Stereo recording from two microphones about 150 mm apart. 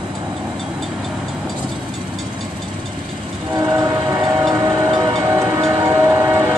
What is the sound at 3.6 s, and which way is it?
Train, 20° right (ahead or behind).